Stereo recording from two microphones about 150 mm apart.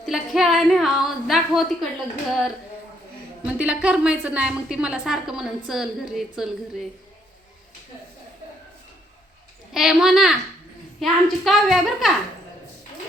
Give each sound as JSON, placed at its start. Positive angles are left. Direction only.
{"t": 0.0, "sound": "a woman's voice", "side_deg": 0}
{"t": 3.4, "sound": "a woman's voice", "side_deg": -10}
{"t": 9.7, "sound": "a woman's voice", "side_deg": -5}